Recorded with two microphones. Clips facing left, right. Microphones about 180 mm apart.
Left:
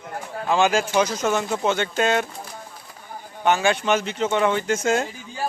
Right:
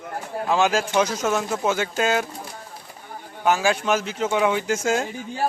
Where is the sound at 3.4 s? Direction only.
5° right (ahead or behind).